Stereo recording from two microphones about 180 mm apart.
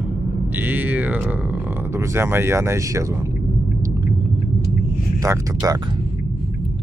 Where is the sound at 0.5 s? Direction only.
10° right (ahead or behind).